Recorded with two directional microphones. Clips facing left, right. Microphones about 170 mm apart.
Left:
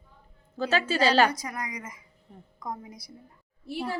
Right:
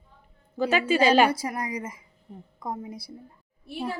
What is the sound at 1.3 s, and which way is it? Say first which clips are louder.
Speech: right 5 dB; 30° right (ahead or behind).